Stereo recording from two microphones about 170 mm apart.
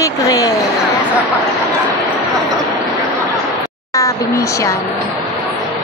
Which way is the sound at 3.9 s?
20° left (ahead or behind).